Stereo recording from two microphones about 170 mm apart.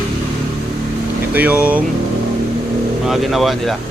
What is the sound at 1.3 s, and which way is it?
Speech, 10° right (ahead or behind).